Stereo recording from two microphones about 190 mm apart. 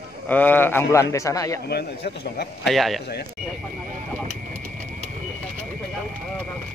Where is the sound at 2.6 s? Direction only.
Centre (ahead or behind).